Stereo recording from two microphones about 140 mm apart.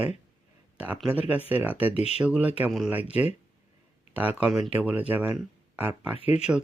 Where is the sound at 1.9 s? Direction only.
45° left (ahead or behind).